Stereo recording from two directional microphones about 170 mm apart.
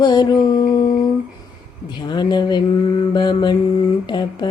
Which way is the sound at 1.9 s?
25° left (ahead or behind).